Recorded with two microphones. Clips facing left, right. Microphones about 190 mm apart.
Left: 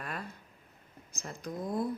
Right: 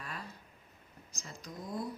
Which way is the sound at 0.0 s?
55° left (ahead or behind).